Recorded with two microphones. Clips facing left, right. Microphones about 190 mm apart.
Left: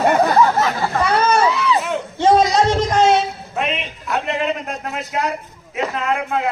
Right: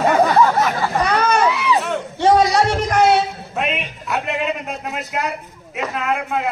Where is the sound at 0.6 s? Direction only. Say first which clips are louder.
Even; 15° right (ahead or behind).